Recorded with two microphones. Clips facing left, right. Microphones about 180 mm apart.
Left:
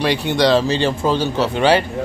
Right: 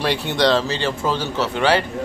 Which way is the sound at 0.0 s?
Centre (ahead or behind).